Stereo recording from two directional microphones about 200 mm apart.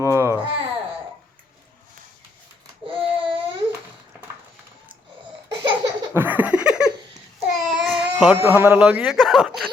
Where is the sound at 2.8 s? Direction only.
25° right (ahead or behind).